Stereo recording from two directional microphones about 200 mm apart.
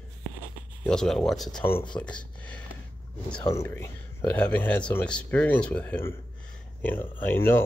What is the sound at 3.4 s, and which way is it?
Speech, 15° left (ahead or behind).